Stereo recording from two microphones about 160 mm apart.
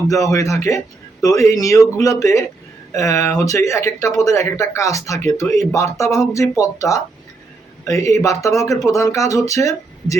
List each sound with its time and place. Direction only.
0.1 s speech: 20° left (ahead or behind)